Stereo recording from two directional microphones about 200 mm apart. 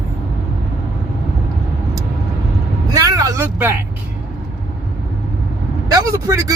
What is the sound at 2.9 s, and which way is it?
Speech, 20° right (ahead or behind).